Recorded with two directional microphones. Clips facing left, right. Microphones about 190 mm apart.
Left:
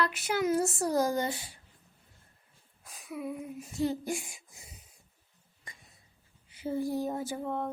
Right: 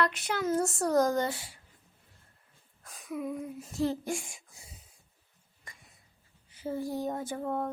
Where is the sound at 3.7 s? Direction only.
Centre (ahead or behind).